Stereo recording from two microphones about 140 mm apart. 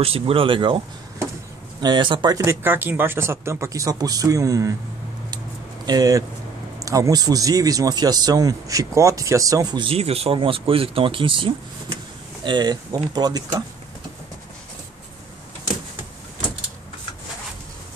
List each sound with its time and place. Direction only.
0.0 s speech: 40° right (ahead or behind)
1.8 s speech: 30° right (ahead or behind)
5.9 s speech: 25° right (ahead or behind)